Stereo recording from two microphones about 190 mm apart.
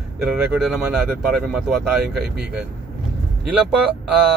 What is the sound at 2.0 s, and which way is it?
Speech, 55° right (ahead or behind).